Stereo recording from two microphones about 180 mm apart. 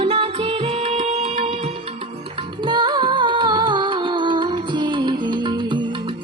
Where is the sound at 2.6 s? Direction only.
25° right (ahead or behind).